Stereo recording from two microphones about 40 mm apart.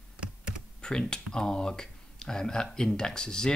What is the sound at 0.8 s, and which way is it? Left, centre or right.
Speech, left.